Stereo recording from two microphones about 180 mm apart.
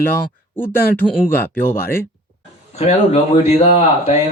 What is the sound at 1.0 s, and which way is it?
Speech, 25° left (ahead or behind).